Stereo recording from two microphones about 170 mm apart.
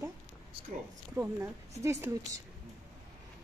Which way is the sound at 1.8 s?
15° right (ahead or behind).